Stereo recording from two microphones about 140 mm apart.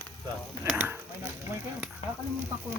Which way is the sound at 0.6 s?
10° right (ahead or behind).